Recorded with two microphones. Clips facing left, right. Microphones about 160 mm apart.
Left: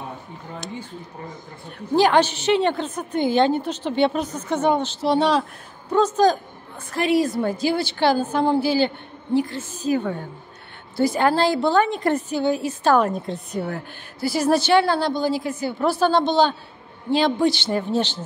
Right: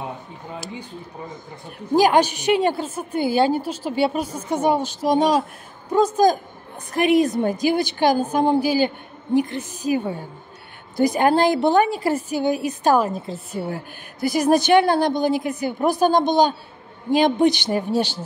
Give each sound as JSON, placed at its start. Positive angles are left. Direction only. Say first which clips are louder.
{"t": 2.0, "sound": "a woman's voice", "louder": "right 1 dB", "side_deg": -10}
{"t": 11.9, "sound": "a woman's voice", "louder": "even", "side_deg": -5}
{"t": 13.0, "sound": "a woman's voice", "louder": "left 2 dB", "side_deg": 0}